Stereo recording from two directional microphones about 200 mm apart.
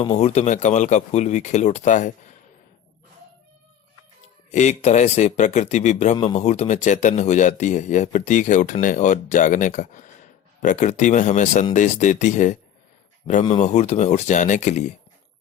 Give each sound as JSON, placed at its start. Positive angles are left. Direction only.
{"t": 0.0, "sound": "speech", "side_deg": 30}
{"t": 4.5, "sound": "speech", "side_deg": 35}